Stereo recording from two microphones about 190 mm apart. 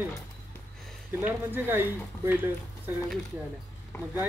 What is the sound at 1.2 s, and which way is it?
Speech, 10° right (ahead or behind).